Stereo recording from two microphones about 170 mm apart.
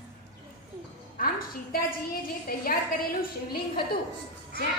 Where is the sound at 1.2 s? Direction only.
60° left (ahead or behind).